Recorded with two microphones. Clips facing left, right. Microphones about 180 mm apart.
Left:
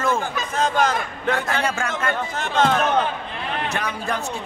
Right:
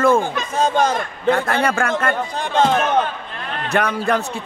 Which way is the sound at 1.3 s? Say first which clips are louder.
Right 4 dB; 60° right (ahead or behind).